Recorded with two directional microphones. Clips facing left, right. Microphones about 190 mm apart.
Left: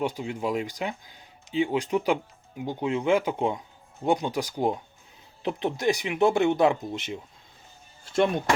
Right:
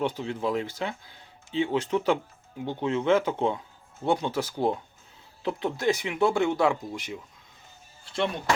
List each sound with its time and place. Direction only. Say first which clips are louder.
0.0 s speech: even; 15° left (ahead or behind)
8.0 s speech: left 5 dB; 45° left (ahead or behind)